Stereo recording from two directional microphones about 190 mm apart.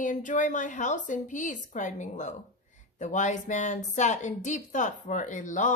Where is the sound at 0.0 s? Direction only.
40° left (ahead or behind).